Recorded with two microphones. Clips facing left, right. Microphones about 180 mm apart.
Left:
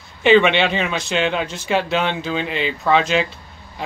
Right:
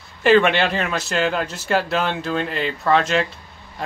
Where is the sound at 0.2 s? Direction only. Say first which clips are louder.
Left 1 dB; centre (ahead or behind).